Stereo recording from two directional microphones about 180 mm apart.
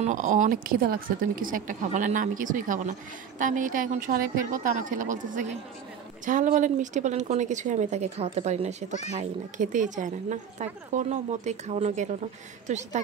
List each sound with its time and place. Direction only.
0.0 s a woman's voice: 45° right (ahead or behind)